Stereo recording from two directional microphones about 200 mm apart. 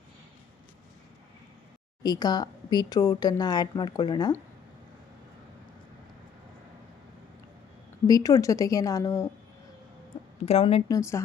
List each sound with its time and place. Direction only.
2.0 s speech: 20° left (ahead or behind)
8.0 s speech: 20° left (ahead or behind)
10.4 s speech: 30° left (ahead or behind)
10.9 s speech: 15° left (ahead or behind)